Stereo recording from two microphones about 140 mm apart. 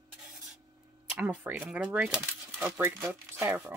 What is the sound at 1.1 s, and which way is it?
Speech, 10° right (ahead or behind).